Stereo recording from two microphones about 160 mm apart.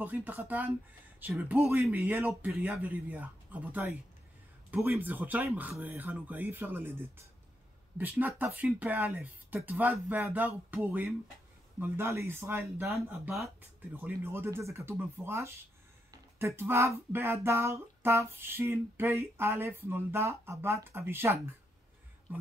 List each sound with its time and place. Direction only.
0.0 s speech: 10° right (ahead or behind)
12.8 s speech: 5° right (ahead or behind)
13.9 s speech: 15° right (ahead or behind)